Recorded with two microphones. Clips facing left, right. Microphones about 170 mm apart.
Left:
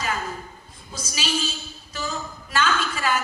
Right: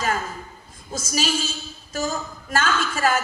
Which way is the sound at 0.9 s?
45° right (ahead or behind).